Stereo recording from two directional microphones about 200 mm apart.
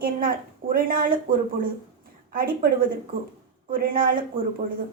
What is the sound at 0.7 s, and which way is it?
Speech, 45° right (ahead or behind).